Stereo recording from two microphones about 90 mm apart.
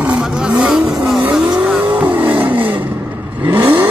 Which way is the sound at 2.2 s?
20° right (ahead or behind).